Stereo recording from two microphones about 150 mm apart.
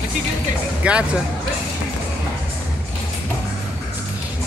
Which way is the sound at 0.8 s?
10° right (ahead or behind).